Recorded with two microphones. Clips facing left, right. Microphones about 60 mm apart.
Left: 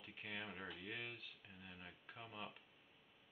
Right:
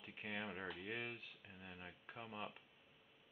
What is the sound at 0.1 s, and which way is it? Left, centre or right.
Speech, centre.